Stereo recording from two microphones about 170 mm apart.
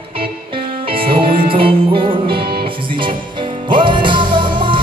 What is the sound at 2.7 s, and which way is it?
Music, 30° right (ahead or behind).